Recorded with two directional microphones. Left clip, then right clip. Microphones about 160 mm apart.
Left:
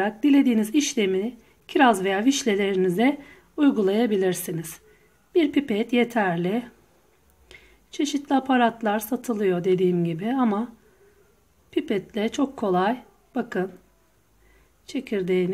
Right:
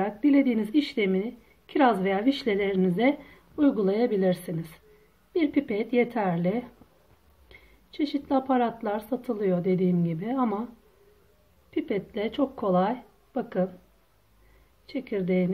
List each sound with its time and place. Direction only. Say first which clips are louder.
0.0 s a woman's voice: left 3 dB; 60° left (ahead or behind)
11.7 s a woman's voice: left 3 dB; 55° left (ahead or behind)
15.0 s speech: left 3 dB; 55° left (ahead or behind)